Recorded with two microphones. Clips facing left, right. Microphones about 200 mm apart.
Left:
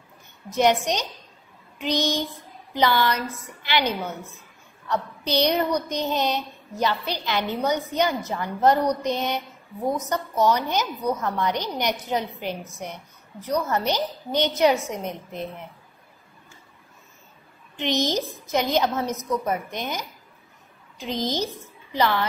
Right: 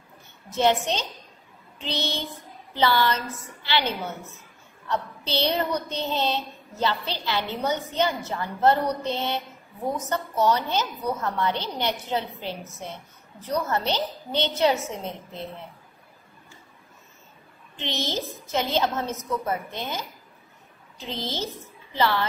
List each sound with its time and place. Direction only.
0.5 s a woman's voice: 15° left (ahead or behind)
17.7 s a woman's voice: 15° left (ahead or behind)